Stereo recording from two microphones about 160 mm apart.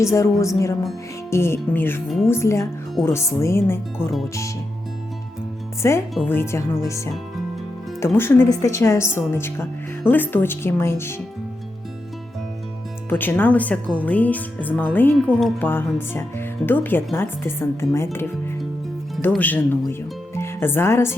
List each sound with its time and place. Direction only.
0.0 s music: 20° left (ahead or behind)
1.3 s speech: 15° left (ahead or behind)
2.0 s speech: centre (ahead or behind)
2.3 s speech: 15° left (ahead or behind)
5.8 s speech: 15° left (ahead or behind)
13.1 s speech: 10° left (ahead or behind)
19.4 s speech: 10° left (ahead or behind)